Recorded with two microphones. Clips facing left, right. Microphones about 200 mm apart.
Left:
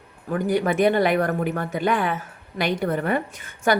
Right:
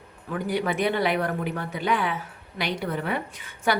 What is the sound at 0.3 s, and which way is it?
A woman's voice, 45° left (ahead or behind).